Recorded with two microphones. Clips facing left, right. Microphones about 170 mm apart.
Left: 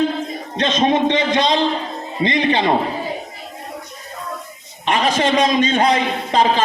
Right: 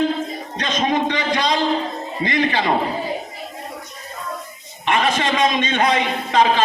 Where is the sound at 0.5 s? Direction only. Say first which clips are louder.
Left 4 dB; 25° left (ahead or behind).